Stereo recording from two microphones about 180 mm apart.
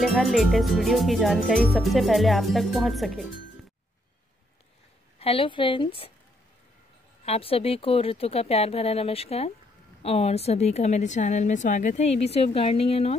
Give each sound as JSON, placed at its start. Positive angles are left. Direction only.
{"t": 0.0, "sound": "speech", "side_deg": 0}
{"t": 5.2, "sound": "a woman's voice", "side_deg": 30}
{"t": 7.2, "sound": "a woman's voice", "side_deg": 30}